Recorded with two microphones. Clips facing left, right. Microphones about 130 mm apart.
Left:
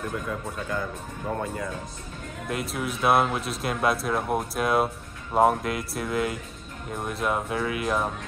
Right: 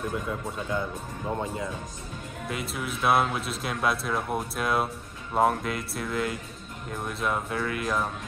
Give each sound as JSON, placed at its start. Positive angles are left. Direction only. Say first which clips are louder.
{"t": 0.1, "sound": "speech", "louder": "even", "side_deg": -20}
{"t": 2.4, "sound": "speech", "louder": "left 3 dB", "side_deg": 0}